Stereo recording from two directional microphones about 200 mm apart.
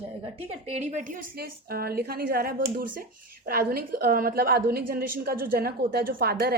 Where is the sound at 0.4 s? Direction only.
35° right (ahead or behind).